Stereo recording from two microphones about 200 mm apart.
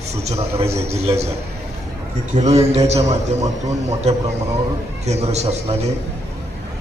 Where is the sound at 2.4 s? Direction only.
35° right (ahead or behind).